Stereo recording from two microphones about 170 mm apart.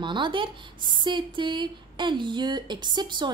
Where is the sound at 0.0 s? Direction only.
30° right (ahead or behind).